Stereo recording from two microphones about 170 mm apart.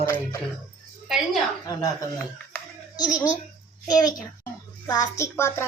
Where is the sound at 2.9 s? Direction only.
20° left (ahead or behind).